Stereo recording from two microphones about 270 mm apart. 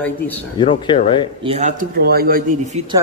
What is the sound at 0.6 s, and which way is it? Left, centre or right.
Speech, centre.